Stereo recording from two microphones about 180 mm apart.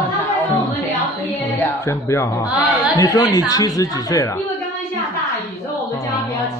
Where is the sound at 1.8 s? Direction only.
15° left (ahead or behind).